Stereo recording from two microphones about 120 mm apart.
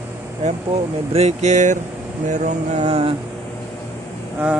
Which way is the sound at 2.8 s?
55° right (ahead or behind).